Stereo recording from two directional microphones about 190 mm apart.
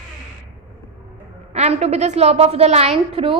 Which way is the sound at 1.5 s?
35° right (ahead or behind).